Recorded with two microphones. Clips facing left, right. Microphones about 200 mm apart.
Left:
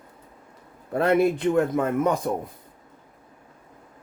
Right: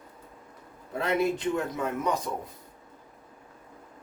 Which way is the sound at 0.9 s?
55° left (ahead or behind).